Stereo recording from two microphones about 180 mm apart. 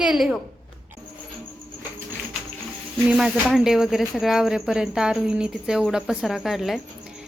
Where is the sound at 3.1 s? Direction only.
Centre (ahead or behind).